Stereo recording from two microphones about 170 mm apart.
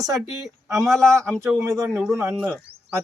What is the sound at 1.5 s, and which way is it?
A man's voice, 20° right (ahead or behind).